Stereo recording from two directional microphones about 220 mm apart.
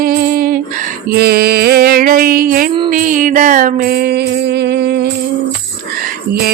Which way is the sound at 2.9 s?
40° right (ahead or behind).